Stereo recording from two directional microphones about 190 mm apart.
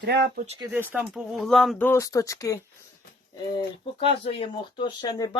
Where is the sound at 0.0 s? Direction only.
60° right (ahead or behind).